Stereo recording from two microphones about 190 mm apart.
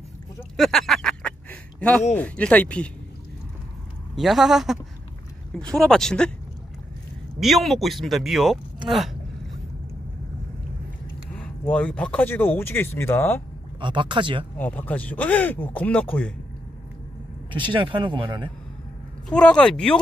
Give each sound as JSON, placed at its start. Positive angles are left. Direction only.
{"t": 0.4, "sound": "a sound", "side_deg": 0}
{"t": 2.1, "sound": "speech", "side_deg": 5}
{"t": 4.1, "sound": "speech", "side_deg": 0}
{"t": 7.3, "sound": "speech", "side_deg": 0}
{"t": 8.8, "sound": "gasp", "side_deg": 0}
{"t": 11.3, "sound": "speech", "side_deg": 5}
{"t": 13.7, "sound": "speech", "side_deg": -25}
{"t": 14.6, "sound": "speech", "side_deg": 10}
{"t": 17.5, "sound": "speech", "side_deg": -25}
{"t": 19.2, "sound": "speech", "side_deg": 5}